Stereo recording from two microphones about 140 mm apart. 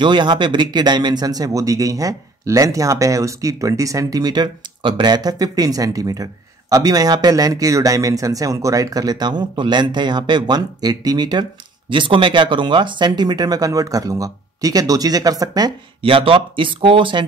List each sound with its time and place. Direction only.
0.0 s speech: 35° right (ahead or behind)